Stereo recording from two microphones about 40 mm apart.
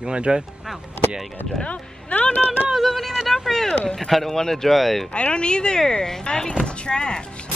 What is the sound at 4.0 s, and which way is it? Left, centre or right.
Speech, centre.